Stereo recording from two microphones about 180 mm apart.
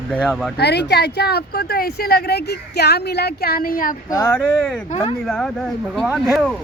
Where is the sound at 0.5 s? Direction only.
65° left (ahead or behind).